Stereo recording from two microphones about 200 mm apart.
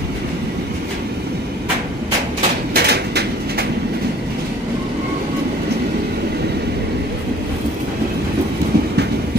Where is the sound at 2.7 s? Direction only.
55° right (ahead or behind).